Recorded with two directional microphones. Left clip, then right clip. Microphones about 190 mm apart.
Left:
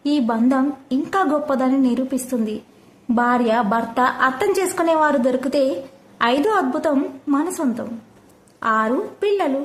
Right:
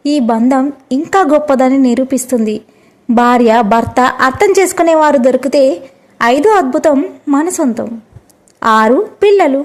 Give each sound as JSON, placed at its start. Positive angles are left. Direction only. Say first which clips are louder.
{"t": 0.0, "sound": "a woman's voice", "louder": "right 7 dB", "side_deg": -35}
{"t": 7.3, "sound": "a woman's voice", "louder": "right 9 dB", "side_deg": -40}